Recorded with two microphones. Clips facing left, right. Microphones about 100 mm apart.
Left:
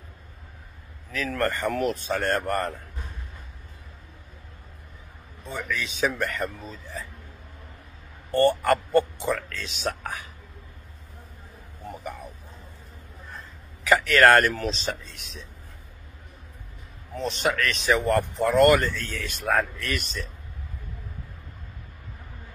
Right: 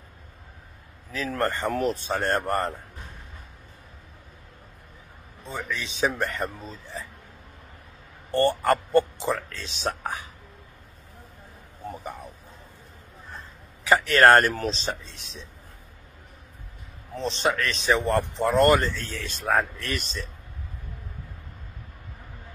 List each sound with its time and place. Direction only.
1.1 s speech: 25° right (ahead or behind)
5.7 s speech: 25° right (ahead or behind)
8.3 s speech: 30° right (ahead or behind)
11.9 s speech: 25° right (ahead or behind)
13.8 s speech: 30° right (ahead or behind)
17.1 s speech: 25° right (ahead or behind)
19.4 s speech: 5° right (ahead or behind)
19.8 s speech: 30° right (ahead or behind)